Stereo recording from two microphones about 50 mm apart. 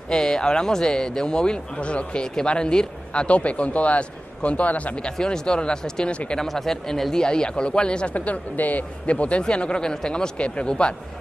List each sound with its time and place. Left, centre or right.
0.1 s a man's voice: centre; by 5.1 s left
5.1 s speech: centre
6.4 s speech: centre
8.1 s a man's voice: left